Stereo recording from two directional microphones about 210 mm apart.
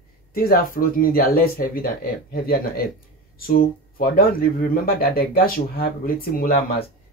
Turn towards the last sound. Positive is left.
turn(degrees=45)  # may be behind; listen again after turning